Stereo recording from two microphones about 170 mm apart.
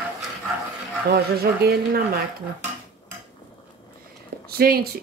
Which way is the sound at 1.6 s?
65° right (ahead or behind).